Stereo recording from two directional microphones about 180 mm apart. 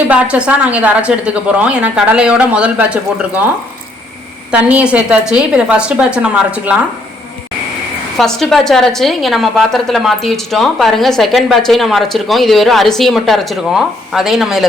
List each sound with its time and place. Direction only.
0.1 s a woman's voice: 5° right (ahead or behind)
4.5 s a woman's voice: 5° right (ahead or behind)
8.2 s a woman's voice: centre (ahead or behind)